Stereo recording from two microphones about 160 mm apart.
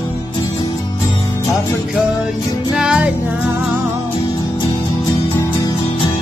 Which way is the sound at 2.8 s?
5° right (ahead or behind).